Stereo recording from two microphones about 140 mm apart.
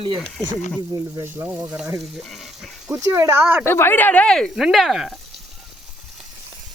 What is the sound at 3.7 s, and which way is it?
Speech, 15° left (ahead or behind).